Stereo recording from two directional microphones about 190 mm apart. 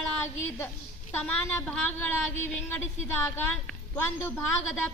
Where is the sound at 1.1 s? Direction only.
10° left (ahead or behind).